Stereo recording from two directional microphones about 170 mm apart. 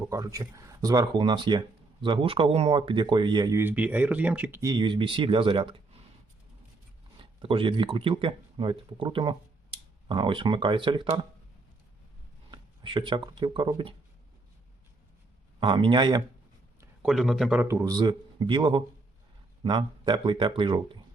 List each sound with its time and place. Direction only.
0.1 s speech: 20° right (ahead or behind)
3.6 s speech: 10° right (ahead or behind)
4.6 s speech: 25° right (ahead or behind)
7.2 s speech: 30° right (ahead or behind)
12.5 s speech: 30° right (ahead or behind)
15.6 s speech: 30° right (ahead or behind)
17.1 s speech: centre (ahead or behind)
17.6 s speech: 15° right (ahead or behind)